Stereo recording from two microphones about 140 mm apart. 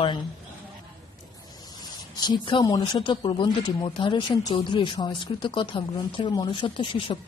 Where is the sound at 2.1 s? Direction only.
30° left (ahead or behind).